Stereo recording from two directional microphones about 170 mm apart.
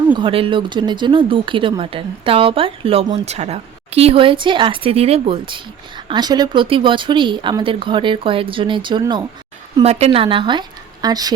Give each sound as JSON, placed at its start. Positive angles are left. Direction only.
{"t": 0.1, "sound": "speech", "side_deg": -30}
{"t": 9.7, "sound": "speech", "side_deg": -40}